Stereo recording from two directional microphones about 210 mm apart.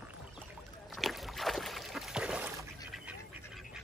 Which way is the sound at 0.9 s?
Centre (ahead or behind).